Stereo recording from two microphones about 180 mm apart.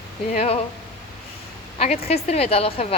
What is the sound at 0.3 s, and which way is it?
Speech, 35° left (ahead or behind).